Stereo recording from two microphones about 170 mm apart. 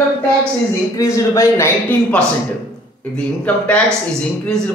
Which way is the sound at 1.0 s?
20° left (ahead or behind).